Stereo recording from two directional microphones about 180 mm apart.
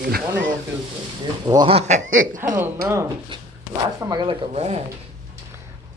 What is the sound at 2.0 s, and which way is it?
Speech, 90° right.